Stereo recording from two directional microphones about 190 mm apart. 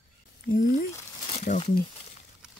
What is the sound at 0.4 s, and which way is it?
Speech, 50° left (ahead or behind).